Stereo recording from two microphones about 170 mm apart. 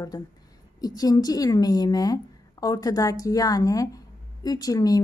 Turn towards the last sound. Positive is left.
turn(degrees=20)  # may be behind; listen again after turning